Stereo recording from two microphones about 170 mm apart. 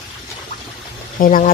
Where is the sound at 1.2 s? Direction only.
50° left (ahead or behind).